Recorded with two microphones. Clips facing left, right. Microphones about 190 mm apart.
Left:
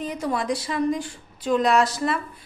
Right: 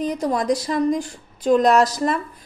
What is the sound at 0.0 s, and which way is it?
A woman's voice, 40° right (ahead or behind).